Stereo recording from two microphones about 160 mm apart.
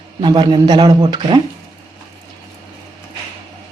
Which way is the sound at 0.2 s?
30° right (ahead or behind).